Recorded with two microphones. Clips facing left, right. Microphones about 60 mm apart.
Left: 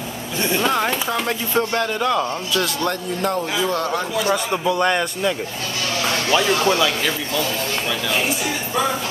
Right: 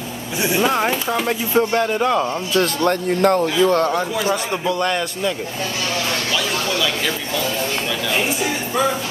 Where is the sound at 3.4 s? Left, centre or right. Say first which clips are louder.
Right 6 dB; centre.